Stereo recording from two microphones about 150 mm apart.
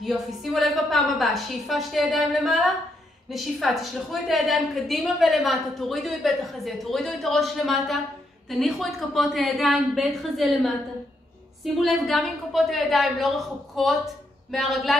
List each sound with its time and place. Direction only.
0.0 s a woman's voice: centre (ahead or behind)